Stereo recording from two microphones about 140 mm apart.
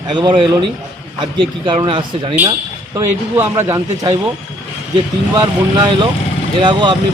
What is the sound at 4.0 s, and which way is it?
Speech, 25° right (ahead or behind).